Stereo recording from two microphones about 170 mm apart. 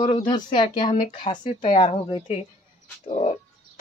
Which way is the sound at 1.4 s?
45° left (ahead or behind).